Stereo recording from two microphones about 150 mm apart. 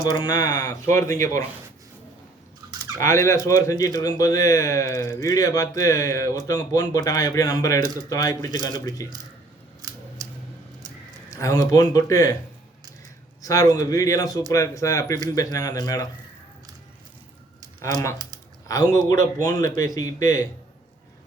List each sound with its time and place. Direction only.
0.0 s speech: 25° left (ahead or behind)
3.0 s speech: 20° left (ahead or behind)
10.2 s a sound: 25° right (ahead or behind)
11.3 s speech: 20° left (ahead or behind)
13.4 s speech: 20° left (ahead or behind)
18.7 s speech: 25° left (ahead or behind)